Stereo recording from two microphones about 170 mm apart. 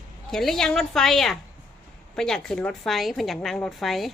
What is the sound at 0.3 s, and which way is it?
A woman's voice, centre (ahead or behind).